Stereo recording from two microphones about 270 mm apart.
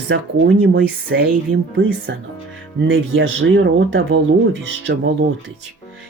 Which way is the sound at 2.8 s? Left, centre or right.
Right.